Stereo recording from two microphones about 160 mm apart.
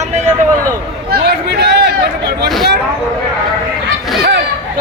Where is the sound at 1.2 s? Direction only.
90° right.